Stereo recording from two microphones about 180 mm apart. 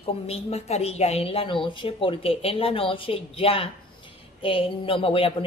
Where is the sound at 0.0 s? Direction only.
35° left (ahead or behind).